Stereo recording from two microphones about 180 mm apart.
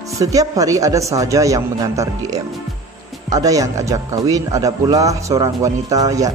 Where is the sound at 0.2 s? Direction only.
20° right (ahead or behind).